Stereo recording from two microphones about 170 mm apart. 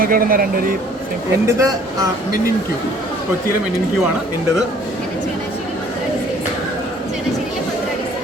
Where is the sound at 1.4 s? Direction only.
20° right (ahead or behind).